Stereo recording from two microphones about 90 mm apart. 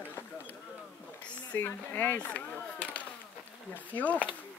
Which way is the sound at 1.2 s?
20° left (ahead or behind).